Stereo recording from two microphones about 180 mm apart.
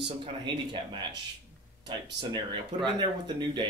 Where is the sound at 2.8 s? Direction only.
25° right (ahead or behind).